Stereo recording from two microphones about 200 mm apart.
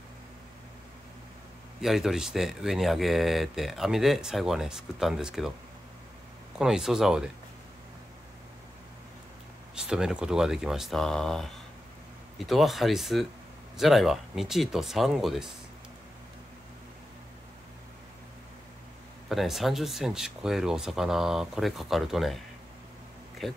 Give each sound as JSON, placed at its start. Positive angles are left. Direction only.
{"t": 1.8, "sound": "speech", "side_deg": 0}
{"t": 6.6, "sound": "speech", "side_deg": -5}
{"t": 9.8, "sound": "speech", "side_deg": -5}
{"t": 19.2, "sound": "speech", "side_deg": 0}
{"t": 23.4, "sound": "speech", "side_deg": 0}